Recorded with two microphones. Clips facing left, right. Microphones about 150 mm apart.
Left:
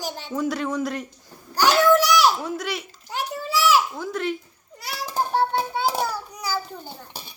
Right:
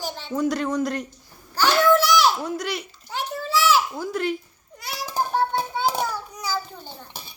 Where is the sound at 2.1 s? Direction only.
10° left (ahead or behind).